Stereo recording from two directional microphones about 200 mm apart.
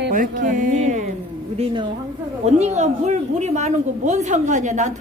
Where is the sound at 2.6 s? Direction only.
35° right (ahead or behind).